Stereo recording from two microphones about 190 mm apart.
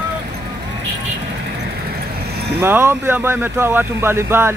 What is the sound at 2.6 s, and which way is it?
Speech, 10° right (ahead or behind).